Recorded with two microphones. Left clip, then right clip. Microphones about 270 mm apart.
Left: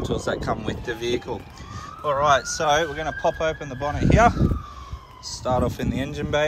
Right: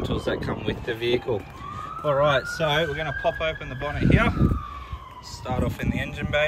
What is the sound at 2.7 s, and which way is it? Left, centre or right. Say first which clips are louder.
Speech: left 3 dB; left.